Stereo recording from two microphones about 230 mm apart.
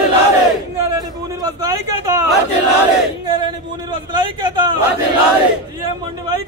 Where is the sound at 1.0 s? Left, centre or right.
Centre.